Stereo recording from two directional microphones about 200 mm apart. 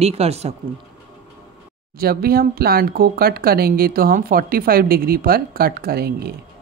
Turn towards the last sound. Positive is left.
turn(degrees=-50)  # may be behind; listen again after turning